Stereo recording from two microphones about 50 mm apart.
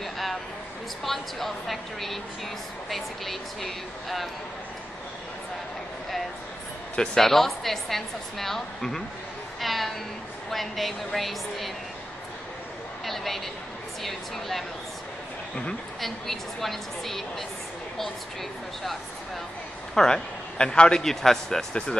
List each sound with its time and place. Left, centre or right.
0.0 s a sound: centre
1.0 s a woman's voice: centre
7.0 s a woman's voice: centre
13.0 s a woman's voice: centre
16.0 s a woman's voice: centre
19.9 s speech: centre
21.0 s a man's voice: centre